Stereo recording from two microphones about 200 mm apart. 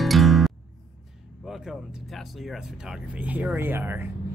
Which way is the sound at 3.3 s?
10° right (ahead or behind).